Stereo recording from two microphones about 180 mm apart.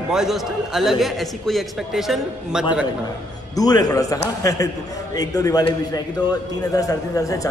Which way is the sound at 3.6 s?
20° left (ahead or behind).